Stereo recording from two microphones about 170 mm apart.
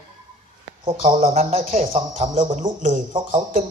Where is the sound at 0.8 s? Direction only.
35° right (ahead or behind).